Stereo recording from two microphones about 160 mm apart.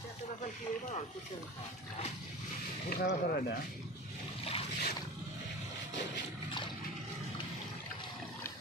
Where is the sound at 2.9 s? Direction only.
70° left (ahead or behind).